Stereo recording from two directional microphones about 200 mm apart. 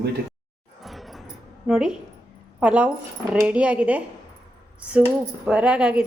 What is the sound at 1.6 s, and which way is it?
A woman's voice, 5° right (ahead or behind).